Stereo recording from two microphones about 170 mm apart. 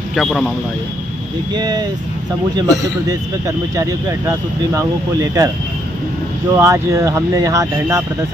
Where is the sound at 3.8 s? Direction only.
20° right (ahead or behind).